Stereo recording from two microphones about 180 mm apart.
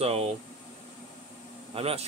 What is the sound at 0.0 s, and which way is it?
Speech, 35° right (ahead or behind).